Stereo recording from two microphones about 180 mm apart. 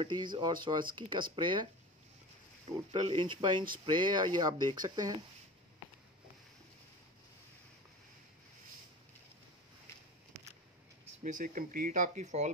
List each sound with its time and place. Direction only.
0.0 s speech: 25° right (ahead or behind)
2.9 s speech: 30° right (ahead or behind)
11.2 s speech: 45° right (ahead or behind)